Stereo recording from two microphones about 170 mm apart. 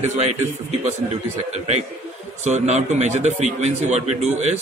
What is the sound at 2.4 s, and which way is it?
A man's voice, 40° right (ahead or behind).